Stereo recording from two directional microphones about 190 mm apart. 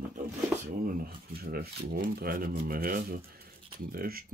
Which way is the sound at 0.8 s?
50° right (ahead or behind).